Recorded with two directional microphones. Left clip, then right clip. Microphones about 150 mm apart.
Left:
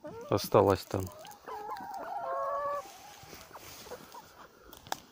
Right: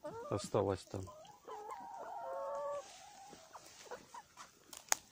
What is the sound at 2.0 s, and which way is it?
Chicken, 90° left.